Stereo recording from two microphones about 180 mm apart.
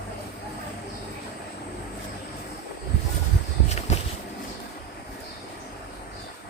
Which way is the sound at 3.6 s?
40° left (ahead or behind).